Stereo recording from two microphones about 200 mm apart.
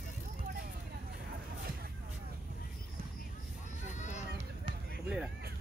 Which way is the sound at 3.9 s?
35° left (ahead or behind).